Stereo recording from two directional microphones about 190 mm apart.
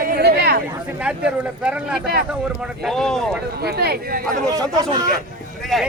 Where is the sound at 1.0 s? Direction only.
5° right (ahead or behind).